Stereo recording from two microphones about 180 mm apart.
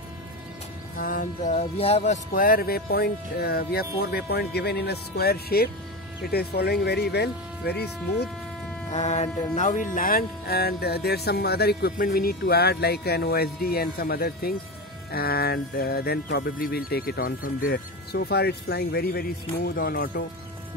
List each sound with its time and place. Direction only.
0.9 s music: 50° left (ahead or behind); by 2.1 s 35° left (ahead or behind)
2.3 s speech: 50° left (ahead or behind)
8.9 s speech: 40° left (ahead or behind)
17.7 s speech: 65° left (ahead or behind)